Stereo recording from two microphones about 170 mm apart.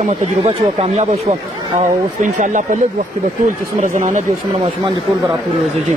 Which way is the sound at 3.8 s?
50° right (ahead or behind).